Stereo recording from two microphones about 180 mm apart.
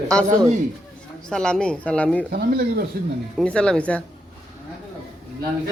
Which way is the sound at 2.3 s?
55° right (ahead or behind).